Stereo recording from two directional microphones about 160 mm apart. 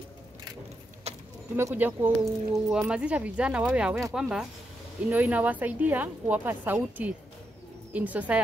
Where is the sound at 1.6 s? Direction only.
15° right (ahead or behind).